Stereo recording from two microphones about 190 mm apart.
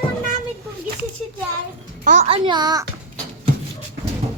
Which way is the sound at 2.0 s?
35° right (ahead or behind).